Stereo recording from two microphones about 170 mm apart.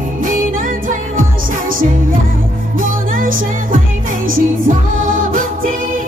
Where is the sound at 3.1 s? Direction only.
55° right (ahead or behind).